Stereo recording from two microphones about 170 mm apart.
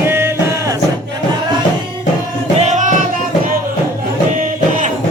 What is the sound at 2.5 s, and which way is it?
Music, 45° right (ahead or behind).